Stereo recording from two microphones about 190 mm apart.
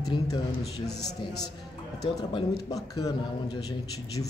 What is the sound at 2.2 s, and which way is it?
A man's voice, 25° left (ahead or behind).